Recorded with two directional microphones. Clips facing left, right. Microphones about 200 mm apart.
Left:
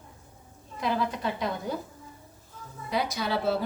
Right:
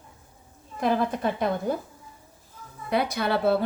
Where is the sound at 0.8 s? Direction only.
50° right (ahead or behind).